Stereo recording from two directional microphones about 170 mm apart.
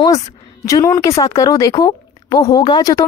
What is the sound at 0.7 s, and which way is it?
Speech, 20° left (ahead or behind).